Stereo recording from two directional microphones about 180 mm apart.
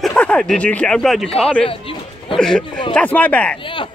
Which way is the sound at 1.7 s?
30° left (ahead or behind).